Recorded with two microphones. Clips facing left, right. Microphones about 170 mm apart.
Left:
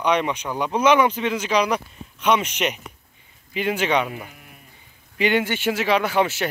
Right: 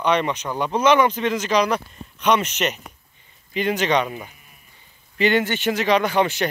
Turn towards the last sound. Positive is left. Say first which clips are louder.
# right 1 dB
turn(degrees=5)  # may be behind; listen again after turning